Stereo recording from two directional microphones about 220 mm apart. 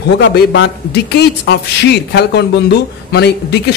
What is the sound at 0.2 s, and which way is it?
Speech, 50° left (ahead or behind).